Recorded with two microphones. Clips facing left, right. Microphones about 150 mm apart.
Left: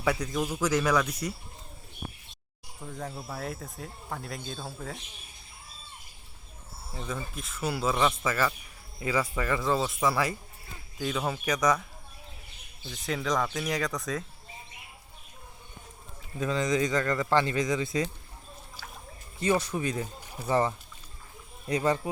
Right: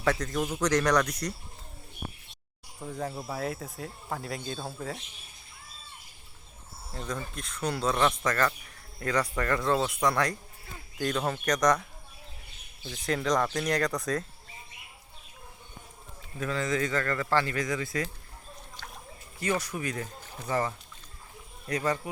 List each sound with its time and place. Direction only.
0.0 s speech: 10° left (ahead or behind)
2.8 s speech: centre (ahead or behind)
6.9 s speech: 5° left (ahead or behind)
12.9 s speech: centre (ahead or behind)
16.4 s speech: 20° left (ahead or behind)
18.8 s splash: 5° left (ahead or behind)
19.4 s speech: 25° left (ahead or behind)
20.5 s speech: 25° left (ahead or behind)